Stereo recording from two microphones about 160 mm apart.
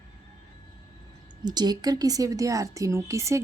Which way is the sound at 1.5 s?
25° right (ahead or behind).